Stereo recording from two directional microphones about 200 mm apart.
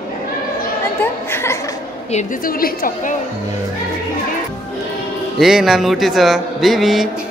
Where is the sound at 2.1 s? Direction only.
40° left (ahead or behind).